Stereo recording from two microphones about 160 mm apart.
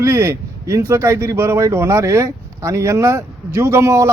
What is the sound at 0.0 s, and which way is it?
Speech, 15° right (ahead or behind).